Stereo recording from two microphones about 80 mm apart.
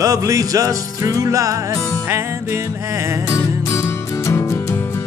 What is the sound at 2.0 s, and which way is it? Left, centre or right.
Music, right.